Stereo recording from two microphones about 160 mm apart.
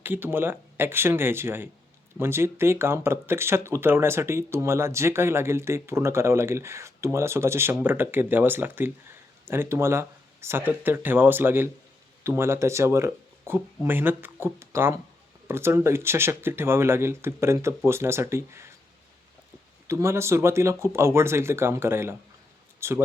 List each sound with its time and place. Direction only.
0.0 s speech: 15° right (ahead or behind)
19.9 s speech: 15° right (ahead or behind)